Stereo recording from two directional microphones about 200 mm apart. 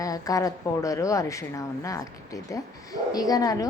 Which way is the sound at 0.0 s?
15° left (ahead or behind).